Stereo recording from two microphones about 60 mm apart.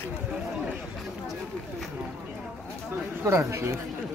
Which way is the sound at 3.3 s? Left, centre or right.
Right.